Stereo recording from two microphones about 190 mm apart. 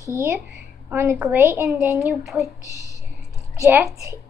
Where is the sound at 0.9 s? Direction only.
10° right (ahead or behind).